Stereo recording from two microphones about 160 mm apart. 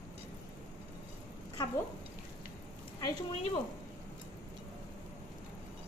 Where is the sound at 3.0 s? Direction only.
25° left (ahead or behind).